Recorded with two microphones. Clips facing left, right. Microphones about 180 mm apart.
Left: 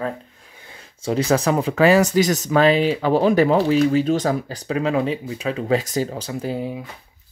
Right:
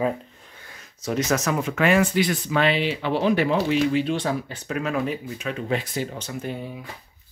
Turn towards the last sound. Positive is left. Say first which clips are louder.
# left 5 dB
turn(degrees=35)  # may be behind; listen again after turning